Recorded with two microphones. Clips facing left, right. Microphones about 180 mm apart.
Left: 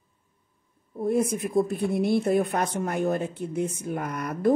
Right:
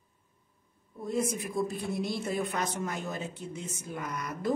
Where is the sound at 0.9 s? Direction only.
55° left (ahead or behind).